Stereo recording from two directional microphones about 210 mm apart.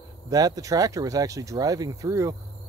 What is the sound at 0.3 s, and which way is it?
Speech, 15° right (ahead or behind).